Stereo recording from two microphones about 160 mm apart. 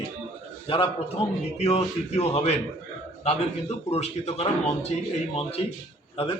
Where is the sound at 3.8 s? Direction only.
40° left (ahead or behind).